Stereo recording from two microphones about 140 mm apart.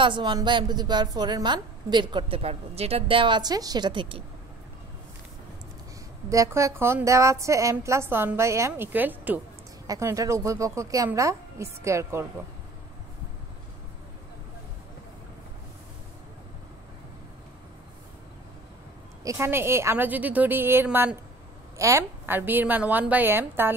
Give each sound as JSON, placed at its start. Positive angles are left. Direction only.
{"t": 0.0, "sound": "a woman's voice", "side_deg": -35}
{"t": 6.2, "sound": "a woman's voice", "side_deg": -25}
{"t": 9.8, "sound": "speech", "side_deg": -20}
{"t": 19.2, "sound": "a woman's voice", "side_deg": -20}